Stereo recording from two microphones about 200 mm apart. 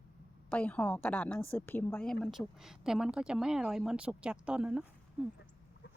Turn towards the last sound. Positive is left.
turn(degrees=-5)  # may be behind; listen again after turning